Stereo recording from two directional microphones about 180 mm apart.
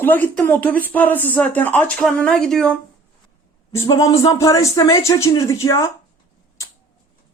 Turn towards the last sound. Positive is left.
turn(degrees=15)  # may be behind; listen again after turning